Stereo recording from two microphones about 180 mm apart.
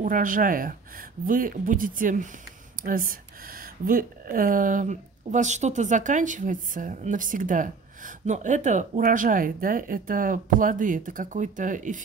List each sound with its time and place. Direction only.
0.0 s speech: 50° right (ahead or behind)